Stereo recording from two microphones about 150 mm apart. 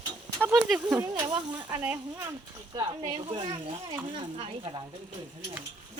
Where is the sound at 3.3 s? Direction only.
35° right (ahead or behind).